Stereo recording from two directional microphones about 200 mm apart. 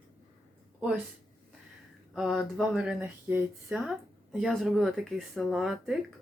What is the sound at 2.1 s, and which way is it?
Speech, centre (ahead or behind).